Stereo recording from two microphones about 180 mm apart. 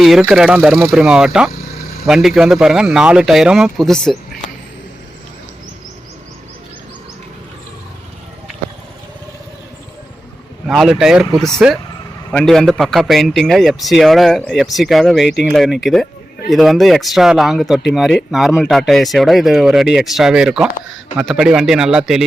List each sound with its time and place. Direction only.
0.0 s a man's voice: centre (ahead or behind)
10.7 s a man's voice: centre (ahead or behind)